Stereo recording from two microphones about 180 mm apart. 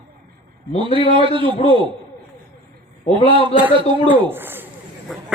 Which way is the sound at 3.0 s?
30° left (ahead or behind).